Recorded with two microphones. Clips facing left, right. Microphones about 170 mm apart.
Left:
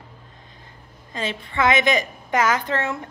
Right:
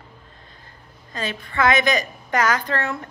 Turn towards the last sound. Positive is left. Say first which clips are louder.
# left 1 dB
turn(degrees=20)  # may be behind; listen again after turning